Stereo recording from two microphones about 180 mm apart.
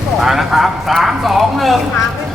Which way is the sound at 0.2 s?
Centre (ahead or behind).